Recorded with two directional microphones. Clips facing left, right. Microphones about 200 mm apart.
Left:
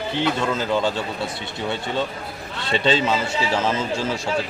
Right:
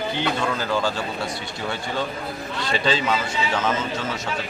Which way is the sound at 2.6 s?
25° left (ahead or behind).